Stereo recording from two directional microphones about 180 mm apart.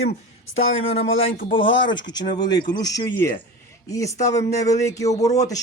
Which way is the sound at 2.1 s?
25° left (ahead or behind).